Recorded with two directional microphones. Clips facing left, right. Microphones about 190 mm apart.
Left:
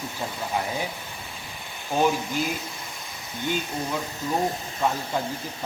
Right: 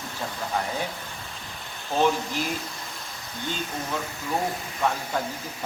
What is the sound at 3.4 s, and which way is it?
Speech, 15° left (ahead or behind).